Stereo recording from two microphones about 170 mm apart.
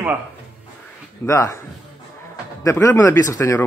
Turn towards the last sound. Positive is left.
turn(degrees=15)  # may be behind; listen again after turning